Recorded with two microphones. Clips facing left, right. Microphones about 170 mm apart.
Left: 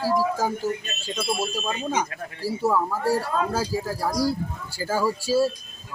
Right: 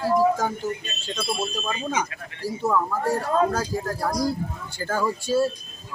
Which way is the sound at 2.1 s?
35° left (ahead or behind).